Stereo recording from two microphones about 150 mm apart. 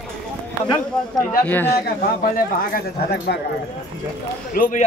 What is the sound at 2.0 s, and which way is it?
Speech, 80° left.